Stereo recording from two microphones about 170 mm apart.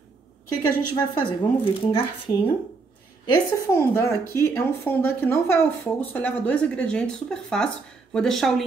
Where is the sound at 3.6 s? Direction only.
15° left (ahead or behind).